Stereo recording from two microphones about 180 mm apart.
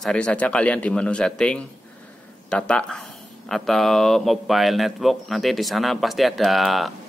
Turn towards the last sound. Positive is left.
turn(degrees=0)  # may be behind; listen again after turning